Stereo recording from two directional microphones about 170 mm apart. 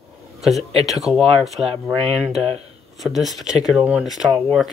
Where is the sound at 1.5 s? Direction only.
35° right (ahead or behind).